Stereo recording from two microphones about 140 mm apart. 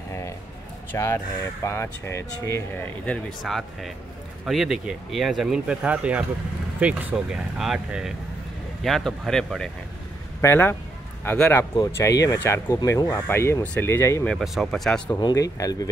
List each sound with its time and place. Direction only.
0.9 s speech: 20° left (ahead or behind)
3.3 s speech: centre (ahead or behind)
10.4 s speech: 15° left (ahead or behind)
11.7 s speech: 25° left (ahead or behind)
14.2 s speech: centre (ahead or behind)
15.1 s speech: 25° left (ahead or behind)